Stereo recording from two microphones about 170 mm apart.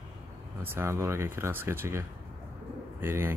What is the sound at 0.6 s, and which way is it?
Speech, 15° right (ahead or behind).